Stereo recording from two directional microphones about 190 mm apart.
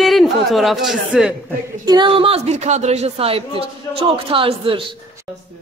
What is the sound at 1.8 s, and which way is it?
A woman's voice, 25° right (ahead or behind).